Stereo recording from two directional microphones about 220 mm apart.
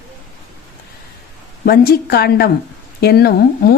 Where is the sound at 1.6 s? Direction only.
40° left (ahead or behind).